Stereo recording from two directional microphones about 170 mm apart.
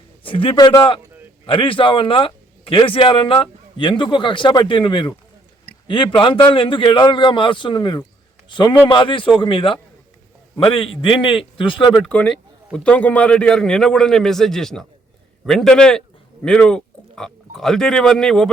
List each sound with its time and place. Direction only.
0.2 s a man's voice: 30° left (ahead or behind)
11.9 s a man's voice: 5° left (ahead or behind)